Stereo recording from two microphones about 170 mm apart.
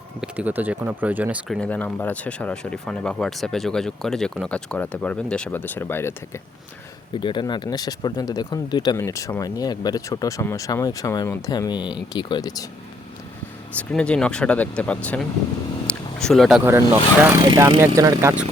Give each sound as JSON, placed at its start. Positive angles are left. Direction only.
{"t": 0.2, "sound": "speech", "side_deg": -10}
{"t": 7.1, "sound": "speech", "side_deg": 30}
{"t": 13.7, "sound": "speech", "side_deg": 5}
{"t": 15.9, "sound": "a sound", "side_deg": 5}
{"t": 17.4, "sound": "speech", "side_deg": -25}